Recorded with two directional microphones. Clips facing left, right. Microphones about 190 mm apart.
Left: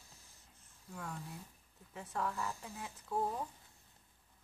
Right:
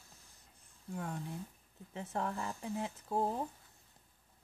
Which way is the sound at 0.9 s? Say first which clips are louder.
Right 5 dB; 35° right (ahead or behind).